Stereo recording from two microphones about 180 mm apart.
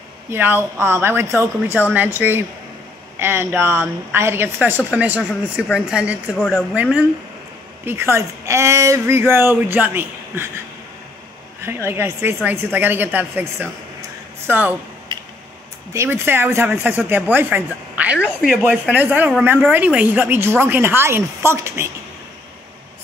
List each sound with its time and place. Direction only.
0.3 s a woman's voice: 10° right (ahead or behind)
11.6 s a woman's voice: 15° right (ahead or behind)
15.1 s a sound: 25° right (ahead or behind)
15.9 s a woman's voice: 15° right (ahead or behind)